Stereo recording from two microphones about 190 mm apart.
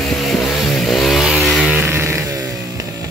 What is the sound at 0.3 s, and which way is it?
Vehicle, centre (ahead or behind).